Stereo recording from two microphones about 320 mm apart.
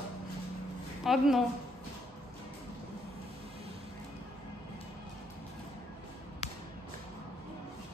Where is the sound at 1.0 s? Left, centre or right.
Centre.